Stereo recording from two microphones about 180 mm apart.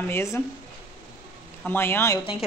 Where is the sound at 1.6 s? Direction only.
10° left (ahead or behind).